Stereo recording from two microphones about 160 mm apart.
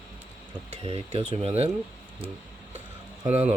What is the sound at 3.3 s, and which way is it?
Speech, 45° right (ahead or behind).